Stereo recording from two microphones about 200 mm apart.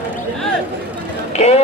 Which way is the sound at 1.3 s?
35° left (ahead or behind).